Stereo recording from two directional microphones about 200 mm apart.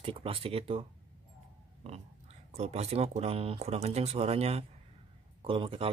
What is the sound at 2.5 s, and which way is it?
Speech, 30° right (ahead or behind).